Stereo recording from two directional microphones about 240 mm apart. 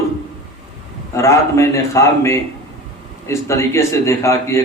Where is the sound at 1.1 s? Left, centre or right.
Centre.